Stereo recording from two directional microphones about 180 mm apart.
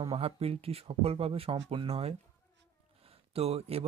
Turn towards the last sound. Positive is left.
turn(degrees=-35)  # may be behind; listen again after turning